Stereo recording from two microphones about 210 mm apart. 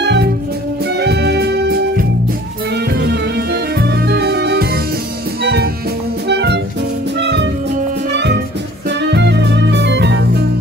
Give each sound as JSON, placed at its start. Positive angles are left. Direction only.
{"t": 0.0, "sound": "music", "side_deg": -55}
{"t": 8.8, "sound": "music", "side_deg": -55}